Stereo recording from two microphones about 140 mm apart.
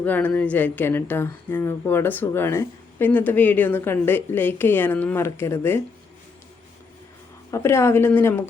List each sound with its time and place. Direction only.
0.0 s speech: 10° left (ahead or behind)
7.5 s speech: 20° left (ahead or behind)